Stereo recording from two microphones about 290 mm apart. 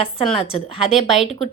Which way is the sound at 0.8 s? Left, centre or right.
Centre.